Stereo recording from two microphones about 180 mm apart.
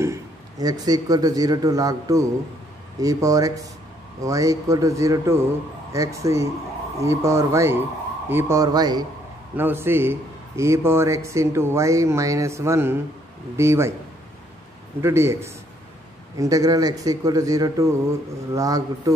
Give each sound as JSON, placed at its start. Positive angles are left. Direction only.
{"t": 0.0, "sound": "a man's voice", "side_deg": -20}
{"t": 9.6, "sound": "a man's voice", "side_deg": -10}
{"t": 15.0, "sound": "a man's voice", "side_deg": -15}